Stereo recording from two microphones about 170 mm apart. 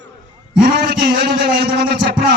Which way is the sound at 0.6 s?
65° right (ahead or behind).